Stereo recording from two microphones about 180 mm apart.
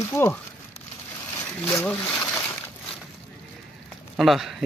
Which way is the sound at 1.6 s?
5° left (ahead or behind).